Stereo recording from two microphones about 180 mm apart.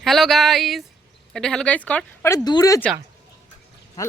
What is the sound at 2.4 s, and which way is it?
Speech, 20° left (ahead or behind).